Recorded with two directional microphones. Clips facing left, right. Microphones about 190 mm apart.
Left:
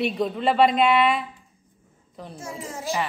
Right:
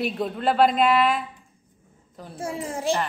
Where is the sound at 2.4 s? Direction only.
30° right (ahead or behind).